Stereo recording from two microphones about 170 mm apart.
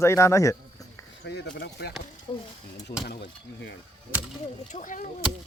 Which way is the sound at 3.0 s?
80° left.